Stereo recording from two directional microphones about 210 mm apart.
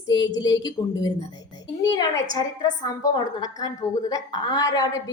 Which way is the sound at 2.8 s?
15° left (ahead or behind).